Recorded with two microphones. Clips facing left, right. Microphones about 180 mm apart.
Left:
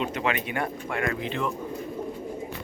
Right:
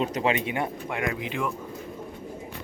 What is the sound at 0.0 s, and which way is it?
Speech, 35° right (ahead or behind).